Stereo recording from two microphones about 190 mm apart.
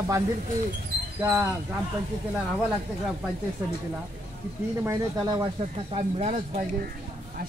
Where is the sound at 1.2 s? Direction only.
10° right (ahead or behind).